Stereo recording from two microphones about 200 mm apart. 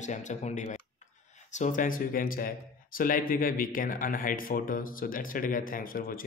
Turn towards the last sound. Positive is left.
turn(degrees=45)  # may be behind; listen again after turning